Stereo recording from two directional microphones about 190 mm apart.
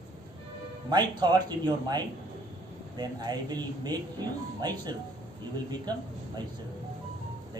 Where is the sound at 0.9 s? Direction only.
20° right (ahead or behind).